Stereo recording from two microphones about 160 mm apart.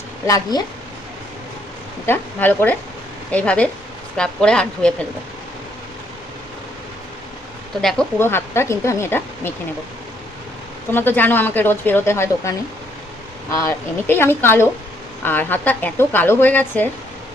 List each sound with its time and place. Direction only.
0.3 s speech: 20° left (ahead or behind)
2.0 s a woman's voice: 10° left (ahead or behind)
7.8 s speech: 5° left (ahead or behind)
8.2 s a woman's voice: 15° left (ahead or behind)
10.9 s a woman's voice: 10° left (ahead or behind)
14.1 s a woman's voice: 15° left (ahead or behind)